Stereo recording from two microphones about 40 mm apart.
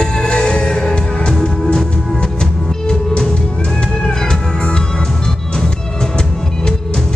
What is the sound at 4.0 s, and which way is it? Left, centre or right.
Music, centre.